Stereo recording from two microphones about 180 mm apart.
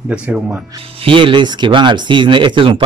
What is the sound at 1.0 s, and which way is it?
Speech, 30° right (ahead or behind).